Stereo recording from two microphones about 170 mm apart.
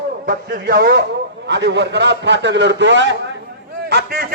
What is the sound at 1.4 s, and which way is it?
A man's voice, 90° right.